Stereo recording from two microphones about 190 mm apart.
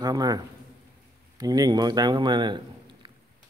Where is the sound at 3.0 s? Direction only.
25° right (ahead or behind).